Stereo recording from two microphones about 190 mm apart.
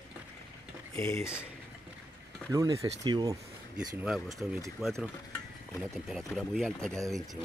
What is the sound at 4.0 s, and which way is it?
Speech, centre (ahead or behind).